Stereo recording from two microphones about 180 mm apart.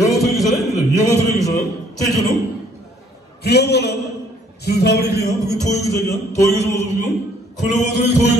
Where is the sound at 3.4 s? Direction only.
65° left (ahead or behind).